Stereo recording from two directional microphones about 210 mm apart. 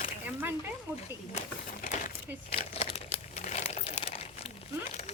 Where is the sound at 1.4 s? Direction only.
35° left (ahead or behind).